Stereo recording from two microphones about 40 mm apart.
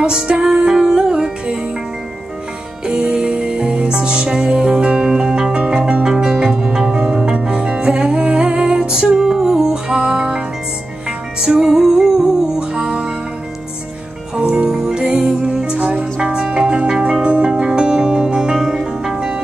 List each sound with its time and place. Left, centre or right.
0.0 s music: centre
2.9 s music: right
12.5 s music: right
14.3 s music: centre